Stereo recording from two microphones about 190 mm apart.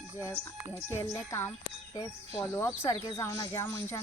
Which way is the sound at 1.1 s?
10° left (ahead or behind).